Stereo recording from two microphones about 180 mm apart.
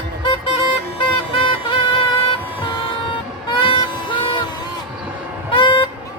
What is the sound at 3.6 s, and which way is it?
Music, 30° left (ahead or behind).